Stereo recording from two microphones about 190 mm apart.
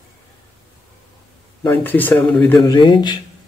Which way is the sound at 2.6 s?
20° left (ahead or behind).